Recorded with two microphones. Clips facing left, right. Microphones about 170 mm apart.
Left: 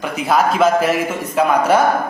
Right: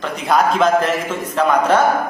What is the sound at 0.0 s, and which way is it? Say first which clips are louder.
A man's voice: even; 5° left (ahead or behind).